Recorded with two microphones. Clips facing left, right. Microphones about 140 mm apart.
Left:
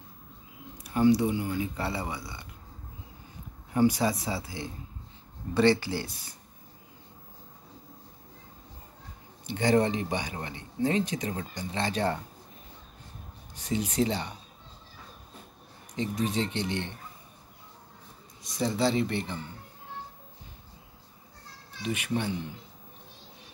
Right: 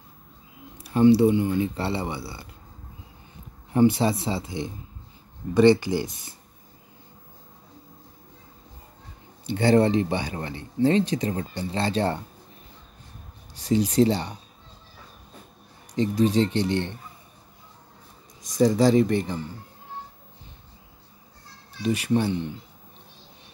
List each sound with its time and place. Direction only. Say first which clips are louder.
0.7 s speech: right 6 dB; 30° right (ahead or behind)
3.7 s speech: right 5 dB; 25° right (ahead or behind)
9.5 s speech: right 5 dB; 30° right (ahead or behind)
13.6 s speech: right 8 dB; 35° right (ahead or behind)
15.9 s speech: right 8 dB; 35° right (ahead or behind)
18.4 s speech: right 8 dB; 45° right (ahead or behind)
21.8 s speech: right 7 dB; 35° right (ahead or behind)